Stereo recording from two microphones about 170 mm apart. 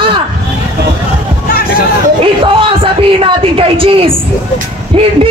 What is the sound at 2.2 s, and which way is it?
A man's voice, 30° right (ahead or behind).